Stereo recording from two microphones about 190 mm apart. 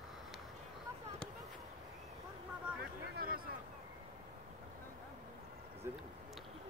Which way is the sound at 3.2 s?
50° right (ahead or behind).